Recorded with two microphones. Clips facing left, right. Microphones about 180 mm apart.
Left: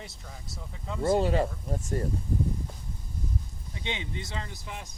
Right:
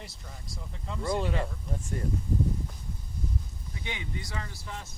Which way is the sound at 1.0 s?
40° left (ahead or behind).